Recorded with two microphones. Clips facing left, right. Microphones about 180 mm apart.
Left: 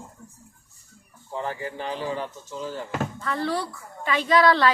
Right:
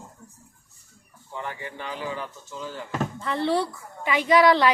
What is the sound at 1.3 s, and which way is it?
Speech, 35° left (ahead or behind).